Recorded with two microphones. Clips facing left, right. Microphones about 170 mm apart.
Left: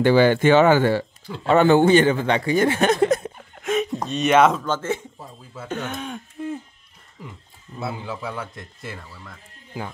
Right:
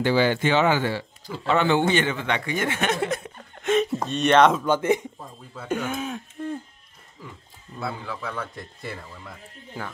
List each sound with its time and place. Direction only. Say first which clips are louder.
0.0 s a man's voice: left 5 dB; 50° left (ahead or behind)
3.3 s a sound: right 1 dB; 5° left (ahead or behind)
4.6 s speech: right 4 dB; 15° right (ahead or behind)
5.7 s throat clearing: right 2 dB; 10° right (ahead or behind)
7.2 s a man's voice: left 2 dB; 20° left (ahead or behind)
8.5 s speech: right 1 dB; centre (ahead or behind)
9.8 s a man's voice: left 3 dB; 10° left (ahead or behind)